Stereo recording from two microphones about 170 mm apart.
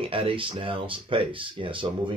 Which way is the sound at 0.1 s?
30° right (ahead or behind).